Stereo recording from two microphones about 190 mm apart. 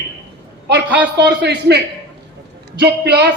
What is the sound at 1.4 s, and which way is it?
Speech, 60° right (ahead or behind).